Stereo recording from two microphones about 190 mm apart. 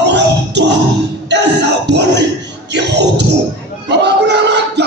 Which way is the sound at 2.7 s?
65° right (ahead or behind).